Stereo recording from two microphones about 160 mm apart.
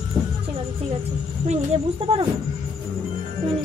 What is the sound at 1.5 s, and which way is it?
Speech, 35° right (ahead or behind).